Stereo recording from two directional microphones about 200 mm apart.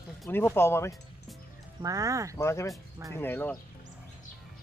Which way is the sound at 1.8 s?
15° right (ahead or behind).